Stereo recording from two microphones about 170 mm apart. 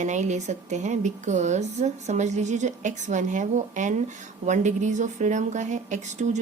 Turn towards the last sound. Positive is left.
turn(degrees=-45)  # may be behind; listen again after turning